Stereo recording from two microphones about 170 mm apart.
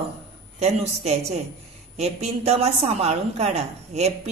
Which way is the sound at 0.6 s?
40° right (ahead or behind).